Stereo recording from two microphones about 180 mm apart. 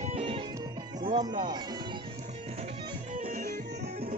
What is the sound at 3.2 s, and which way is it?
Music, 50° right (ahead or behind).